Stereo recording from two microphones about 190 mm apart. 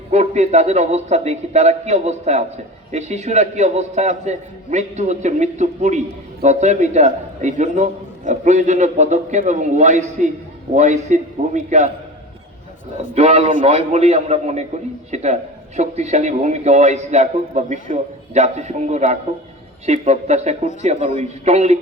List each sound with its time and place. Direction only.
0.1 s a man's voice: 35° right (ahead or behind)
13.1 s a man's voice: 35° right (ahead or behind)